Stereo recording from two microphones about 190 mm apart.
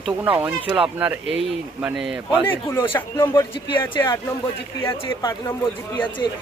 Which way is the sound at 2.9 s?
15° left (ahead or behind).